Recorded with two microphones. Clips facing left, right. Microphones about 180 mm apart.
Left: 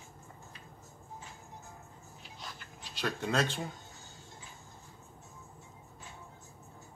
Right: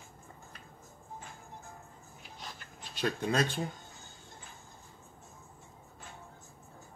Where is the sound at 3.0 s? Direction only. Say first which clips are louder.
Right 2 dB; 15° right (ahead or behind).